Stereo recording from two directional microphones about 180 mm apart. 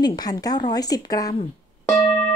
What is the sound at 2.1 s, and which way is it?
Music, 5° left (ahead or behind).